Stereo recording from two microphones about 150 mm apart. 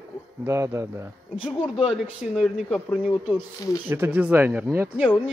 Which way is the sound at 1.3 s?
5° right (ahead or behind).